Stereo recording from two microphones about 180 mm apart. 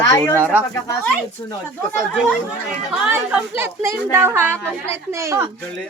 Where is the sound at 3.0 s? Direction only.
5° right (ahead or behind).